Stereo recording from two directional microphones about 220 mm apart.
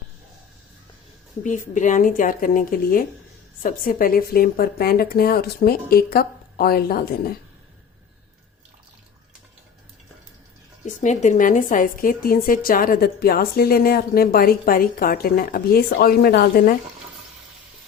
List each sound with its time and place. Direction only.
1.5 s speech: 35° left (ahead or behind)
10.8 s speech: 35° left (ahead or behind)